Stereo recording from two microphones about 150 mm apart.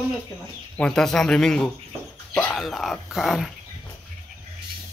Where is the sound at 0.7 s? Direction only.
5° left (ahead or behind).